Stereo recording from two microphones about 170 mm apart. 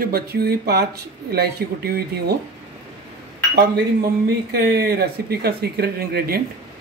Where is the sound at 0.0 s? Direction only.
65° right (ahead or behind).